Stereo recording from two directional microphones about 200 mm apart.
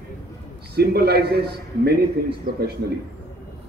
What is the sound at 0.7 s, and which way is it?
Speech, 55° right (ahead or behind).